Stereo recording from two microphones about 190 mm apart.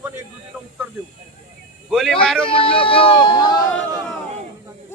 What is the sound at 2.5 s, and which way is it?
Speech, 30° left (ahead or behind).